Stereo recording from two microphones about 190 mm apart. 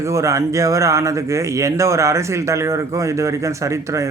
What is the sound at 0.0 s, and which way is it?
Speech, 15° right (ahead or behind).